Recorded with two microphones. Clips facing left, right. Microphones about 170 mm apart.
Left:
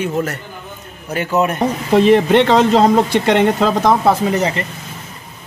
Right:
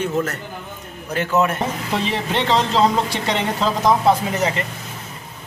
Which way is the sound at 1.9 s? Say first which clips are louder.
Left 13 dB; 55° left (ahead or behind).